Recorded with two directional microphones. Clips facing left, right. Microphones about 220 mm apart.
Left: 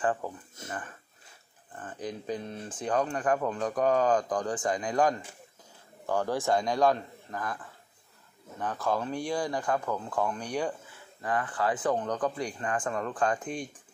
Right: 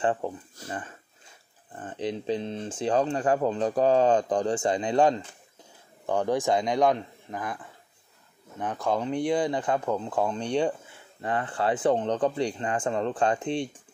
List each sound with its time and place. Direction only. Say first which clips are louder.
0.0 s speech: right 3 dB; 25° right (ahead or behind)
1.8 s speech: right 6 dB; 25° right (ahead or behind)
8.5 s speech: right 2 dB; 15° right (ahead or behind)